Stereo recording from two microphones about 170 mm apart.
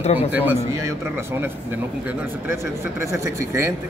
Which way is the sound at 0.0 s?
40° left (ahead or behind).